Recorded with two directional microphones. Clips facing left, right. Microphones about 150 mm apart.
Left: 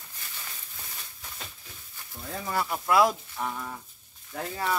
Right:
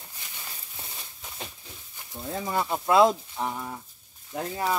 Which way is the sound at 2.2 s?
20° right (ahead or behind).